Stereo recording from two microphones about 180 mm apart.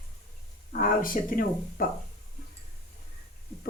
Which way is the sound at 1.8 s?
55° left (ahead or behind).